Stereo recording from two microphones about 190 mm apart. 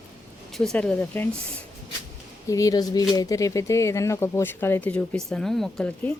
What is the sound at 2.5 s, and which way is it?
Speech, 20° left (ahead or behind).